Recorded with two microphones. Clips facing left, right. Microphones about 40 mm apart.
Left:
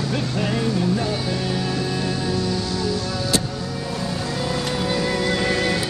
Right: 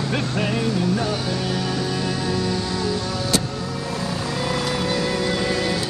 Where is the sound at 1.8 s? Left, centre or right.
Right.